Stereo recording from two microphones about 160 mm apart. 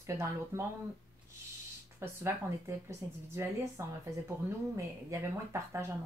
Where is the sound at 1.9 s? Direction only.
15° right (ahead or behind).